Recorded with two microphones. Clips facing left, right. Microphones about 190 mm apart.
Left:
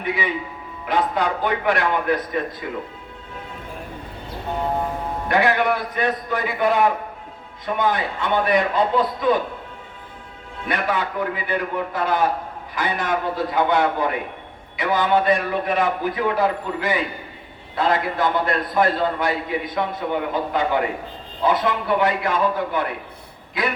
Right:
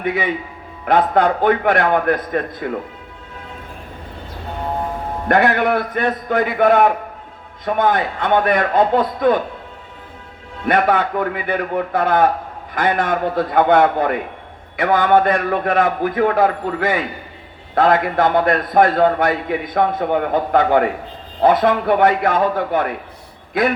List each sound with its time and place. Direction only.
0.9 s a man's voice: 55° right (ahead or behind)
5.3 s a man's voice: 50° right (ahead or behind)
10.7 s a man's voice: 55° right (ahead or behind)